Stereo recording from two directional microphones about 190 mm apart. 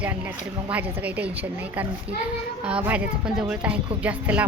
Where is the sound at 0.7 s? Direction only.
10° right (ahead or behind).